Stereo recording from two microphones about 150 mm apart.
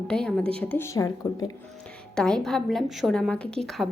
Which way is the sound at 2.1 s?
5° left (ahead or behind).